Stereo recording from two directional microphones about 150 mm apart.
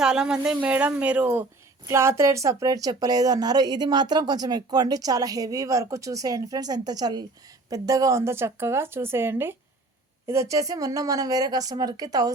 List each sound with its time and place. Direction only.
0.0 s a woman's voice: 5° right (ahead or behind); by 12.3 s 25° right (ahead or behind)